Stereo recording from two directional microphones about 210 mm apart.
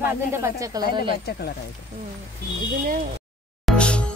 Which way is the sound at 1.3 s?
50° left (ahead or behind).